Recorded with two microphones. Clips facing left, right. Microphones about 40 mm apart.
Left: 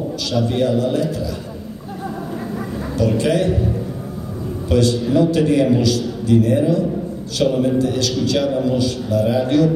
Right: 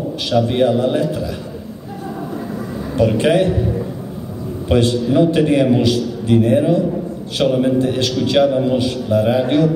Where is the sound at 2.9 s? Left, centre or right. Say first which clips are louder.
Right 4 dB; right.